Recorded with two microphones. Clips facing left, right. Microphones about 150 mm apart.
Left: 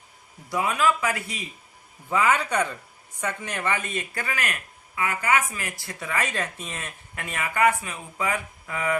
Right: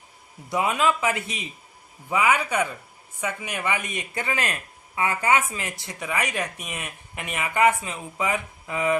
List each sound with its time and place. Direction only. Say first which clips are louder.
0.5 s a woman's voice: right 1 dB; 20° right (ahead or behind)